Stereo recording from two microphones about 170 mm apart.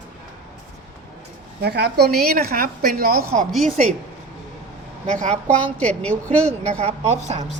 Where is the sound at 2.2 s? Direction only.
60° right (ahead or behind).